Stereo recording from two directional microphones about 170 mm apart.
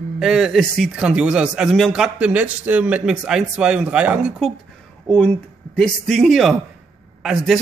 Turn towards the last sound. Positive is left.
turn(degrees=0)  # may be behind; listen again after turning